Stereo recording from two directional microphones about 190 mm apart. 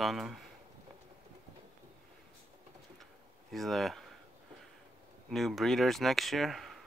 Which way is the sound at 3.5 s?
Centre (ahead or behind).